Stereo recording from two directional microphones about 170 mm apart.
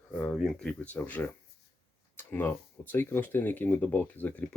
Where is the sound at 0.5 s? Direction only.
5° left (ahead or behind).